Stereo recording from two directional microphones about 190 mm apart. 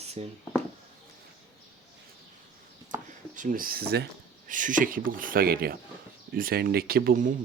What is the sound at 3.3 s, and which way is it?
Speech, 45° right (ahead or behind).